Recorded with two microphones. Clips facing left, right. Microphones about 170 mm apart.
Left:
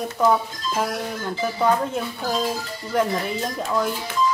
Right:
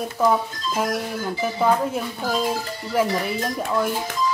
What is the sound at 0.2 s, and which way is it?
Speech, centre (ahead or behind).